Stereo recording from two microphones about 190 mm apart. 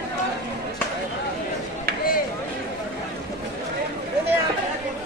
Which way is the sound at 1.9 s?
50° right (ahead or behind).